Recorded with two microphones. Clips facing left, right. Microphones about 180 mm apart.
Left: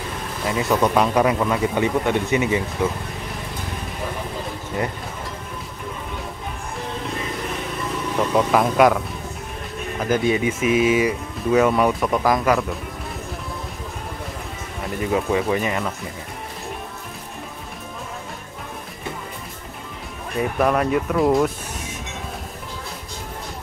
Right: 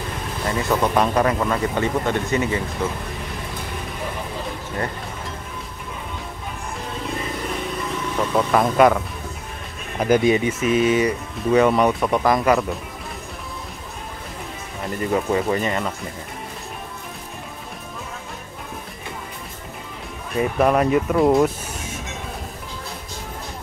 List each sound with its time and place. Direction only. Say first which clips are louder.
0.5 s speech: left 1 dB; 10° left (ahead or behind)
8.3 s speech: even; 5° left (ahead or behind)
10.2 s speech: right 1 dB; 5° left (ahead or behind)
15.0 s speech: even; 5° left (ahead or behind)
20.3 s speech: right 2 dB; centre (ahead or behind)